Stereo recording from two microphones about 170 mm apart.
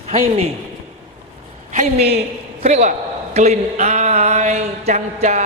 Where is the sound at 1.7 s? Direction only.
40° right (ahead or behind).